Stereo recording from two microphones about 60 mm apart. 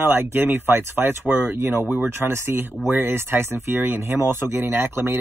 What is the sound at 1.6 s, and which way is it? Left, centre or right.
Speech, right.